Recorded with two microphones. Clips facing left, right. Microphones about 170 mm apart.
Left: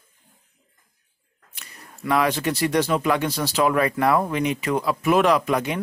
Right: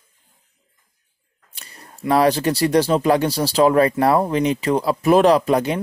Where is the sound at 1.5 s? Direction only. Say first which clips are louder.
Right 2 dB; 30° right (ahead or behind).